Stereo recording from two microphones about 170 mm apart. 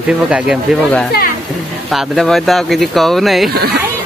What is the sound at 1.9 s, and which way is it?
Speech, centre (ahead or behind).